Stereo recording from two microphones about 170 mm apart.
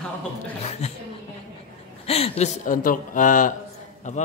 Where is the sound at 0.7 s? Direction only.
40° left (ahead or behind).